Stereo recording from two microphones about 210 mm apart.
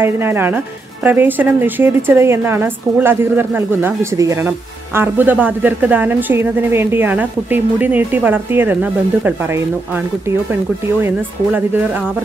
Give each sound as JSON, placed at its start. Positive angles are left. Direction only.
{"t": 0.0, "sound": "a woman's voice", "side_deg": -10}
{"t": 10.5, "sound": "a woman's voice", "side_deg": -10}